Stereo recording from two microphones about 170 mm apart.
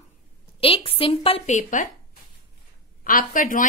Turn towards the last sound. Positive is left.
turn(degrees=50)  # may be behind; listen again after turning